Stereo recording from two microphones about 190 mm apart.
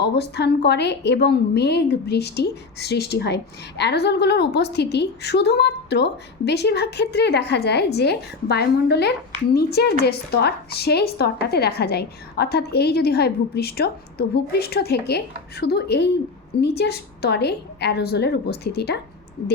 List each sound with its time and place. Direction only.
0.0 s a woman's voice: 60° left (ahead or behind)